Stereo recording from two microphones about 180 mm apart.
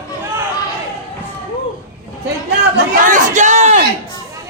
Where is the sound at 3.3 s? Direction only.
40° right (ahead or behind).